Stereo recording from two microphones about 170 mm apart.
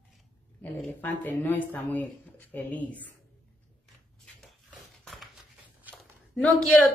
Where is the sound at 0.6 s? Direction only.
10° left (ahead or behind).